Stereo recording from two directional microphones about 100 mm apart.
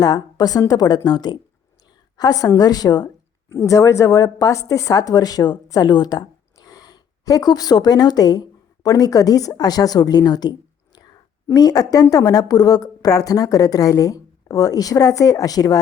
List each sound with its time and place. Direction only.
0.0 s a woman's voice: 40° left (ahead or behind)